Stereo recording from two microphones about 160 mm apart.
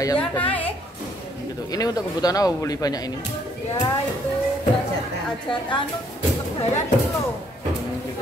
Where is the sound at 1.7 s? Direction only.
25° left (ahead or behind).